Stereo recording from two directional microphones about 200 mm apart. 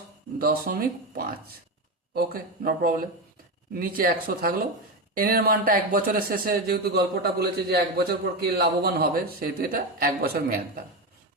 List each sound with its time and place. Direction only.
0.3 s speech: 45° right (ahead or behind)